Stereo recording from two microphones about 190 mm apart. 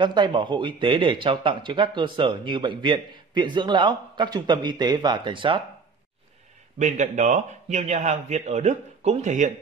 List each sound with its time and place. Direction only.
0.0 s speech: 25° right (ahead or behind)
6.8 s a man's voice: 40° right (ahead or behind)